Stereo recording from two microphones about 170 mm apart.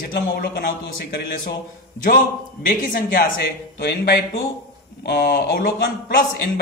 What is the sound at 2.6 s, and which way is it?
Speech, 60° left (ahead or behind).